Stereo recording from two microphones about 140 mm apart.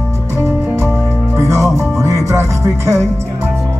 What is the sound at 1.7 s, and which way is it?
Music, 20° right (ahead or behind).